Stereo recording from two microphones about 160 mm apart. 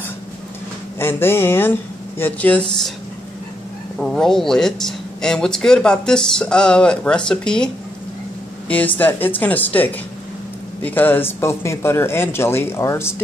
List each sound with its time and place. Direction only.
0.9 s speech: 15° left (ahead or behind)
4.0 s speech: 5° left (ahead or behind)